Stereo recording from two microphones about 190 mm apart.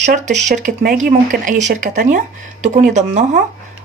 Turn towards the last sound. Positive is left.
turn(degrees=-40)  # may be behind; listen again after turning